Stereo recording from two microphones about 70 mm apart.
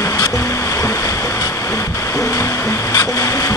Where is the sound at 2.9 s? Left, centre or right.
Left.